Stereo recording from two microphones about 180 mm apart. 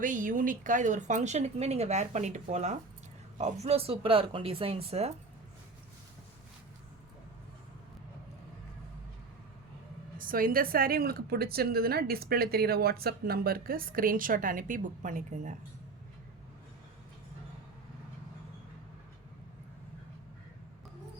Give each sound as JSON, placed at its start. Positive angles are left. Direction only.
{"t": 0.0, "sound": "speech", "side_deg": -45}
{"t": 10.2, "sound": "a woman's voice", "side_deg": -50}